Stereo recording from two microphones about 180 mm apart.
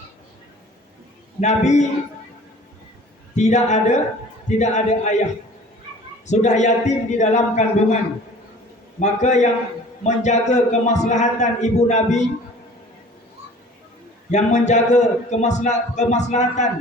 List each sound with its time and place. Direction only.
1.4 s a man's voice: 40° left (ahead or behind)
3.3 s a man's voice: 40° left (ahead or behind)
6.2 s a man's voice: 40° left (ahead or behind)
9.0 s a man's voice: 40° left (ahead or behind)
14.3 s a man's voice: 40° left (ahead or behind)